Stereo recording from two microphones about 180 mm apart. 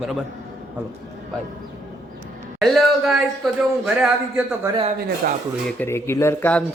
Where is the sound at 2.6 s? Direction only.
Centre (ahead or behind).